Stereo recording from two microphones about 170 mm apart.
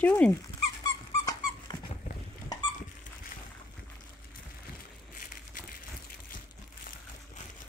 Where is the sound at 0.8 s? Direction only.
25° left (ahead or behind).